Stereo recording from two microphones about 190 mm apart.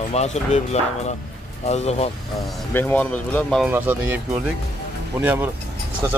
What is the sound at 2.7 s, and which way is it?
Speech, 10° left (ahead or behind).